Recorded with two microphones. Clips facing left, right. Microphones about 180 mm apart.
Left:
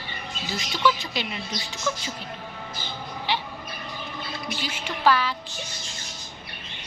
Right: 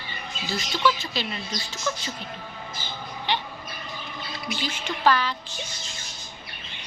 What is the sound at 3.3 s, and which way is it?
Bird, 5° left (ahead or behind).